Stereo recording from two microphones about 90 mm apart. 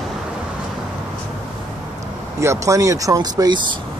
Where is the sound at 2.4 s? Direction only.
35° right (ahead or behind); by 3.8 s 55° right (ahead or behind).